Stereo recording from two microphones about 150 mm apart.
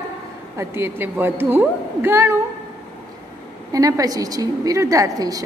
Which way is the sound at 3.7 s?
25° right (ahead or behind).